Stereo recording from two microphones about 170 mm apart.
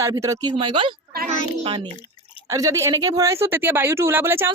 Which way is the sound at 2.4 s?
20° right (ahead or behind).